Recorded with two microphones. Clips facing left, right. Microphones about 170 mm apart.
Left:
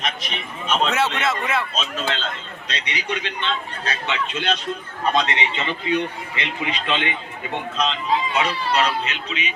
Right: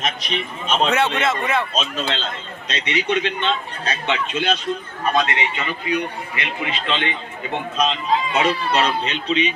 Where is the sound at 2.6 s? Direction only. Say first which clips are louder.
Right 6 dB; 25° right (ahead or behind).